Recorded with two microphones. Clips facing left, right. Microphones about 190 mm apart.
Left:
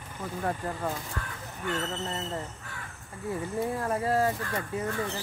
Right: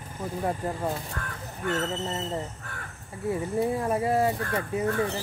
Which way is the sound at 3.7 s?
20° right (ahead or behind).